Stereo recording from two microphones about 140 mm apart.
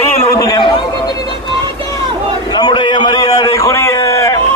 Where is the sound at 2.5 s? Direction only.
30° left (ahead or behind).